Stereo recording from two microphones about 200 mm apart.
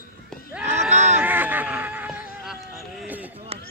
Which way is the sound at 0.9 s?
35° right (ahead or behind).